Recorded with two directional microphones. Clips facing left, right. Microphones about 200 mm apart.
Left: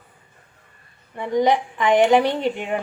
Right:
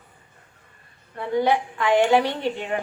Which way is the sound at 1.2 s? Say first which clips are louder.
Left 2 dB; 15° left (ahead or behind).